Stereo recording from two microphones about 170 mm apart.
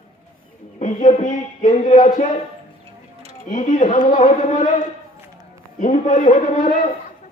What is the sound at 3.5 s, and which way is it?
Music, 45° left (ahead or behind).